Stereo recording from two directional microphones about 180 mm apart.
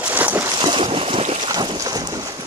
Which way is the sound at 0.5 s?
30° right (ahead or behind).